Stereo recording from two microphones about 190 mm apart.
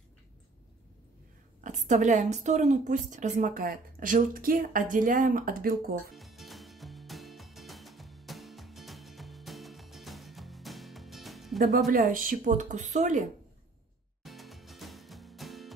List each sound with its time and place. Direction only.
1.6 s a woman's voice: 40° right (ahead or behind)
6.1 s music: centre (ahead or behind)
11.6 s a woman's voice: 45° right (ahead or behind)
14.2 s music: centre (ahead or behind)